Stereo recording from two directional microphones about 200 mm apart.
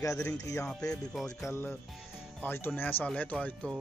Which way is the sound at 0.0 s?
15° left (ahead or behind).